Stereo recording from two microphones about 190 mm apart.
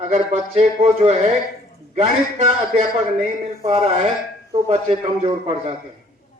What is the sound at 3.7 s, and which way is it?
A man's voice, 30° right (ahead or behind).